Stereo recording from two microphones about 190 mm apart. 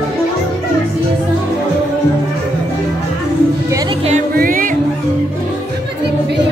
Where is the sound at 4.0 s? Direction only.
35° right (ahead or behind).